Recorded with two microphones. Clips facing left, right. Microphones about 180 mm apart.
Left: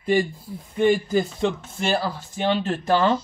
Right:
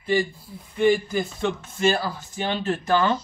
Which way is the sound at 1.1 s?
40° left (ahead or behind).